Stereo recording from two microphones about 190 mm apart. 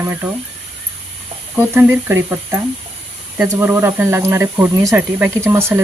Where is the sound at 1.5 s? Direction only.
10° right (ahead or behind).